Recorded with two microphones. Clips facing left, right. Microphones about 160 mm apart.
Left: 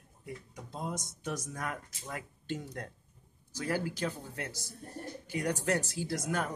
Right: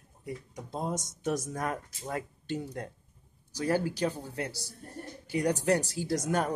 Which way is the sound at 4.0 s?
35° right (ahead or behind).